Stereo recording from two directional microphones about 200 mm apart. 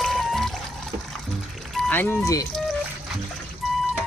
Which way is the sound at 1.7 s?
5° left (ahead or behind).